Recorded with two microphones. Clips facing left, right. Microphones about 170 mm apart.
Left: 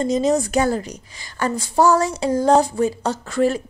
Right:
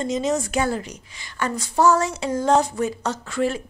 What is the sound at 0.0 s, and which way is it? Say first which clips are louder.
A woman's voice: left 5 dB; 35° left (ahead or behind).